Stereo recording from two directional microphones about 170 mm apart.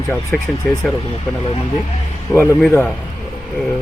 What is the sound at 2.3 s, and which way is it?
Speech, 10° left (ahead or behind).